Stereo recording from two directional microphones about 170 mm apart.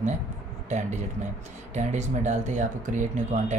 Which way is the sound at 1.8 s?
45° right (ahead or behind).